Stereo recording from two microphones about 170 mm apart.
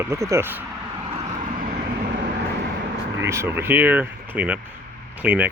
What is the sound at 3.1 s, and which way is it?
Speech, 15° right (ahead or behind).